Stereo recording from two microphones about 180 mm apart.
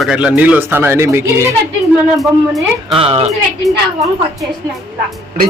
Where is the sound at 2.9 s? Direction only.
30° right (ahead or behind).